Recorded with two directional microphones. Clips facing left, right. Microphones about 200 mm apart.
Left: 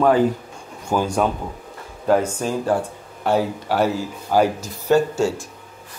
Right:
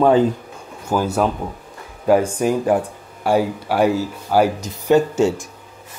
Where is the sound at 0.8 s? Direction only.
5° right (ahead or behind).